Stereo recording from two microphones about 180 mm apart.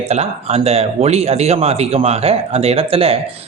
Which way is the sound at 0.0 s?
35° right (ahead or behind).